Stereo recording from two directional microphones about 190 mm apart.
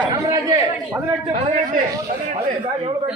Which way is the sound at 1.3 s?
35° right (ahead or behind).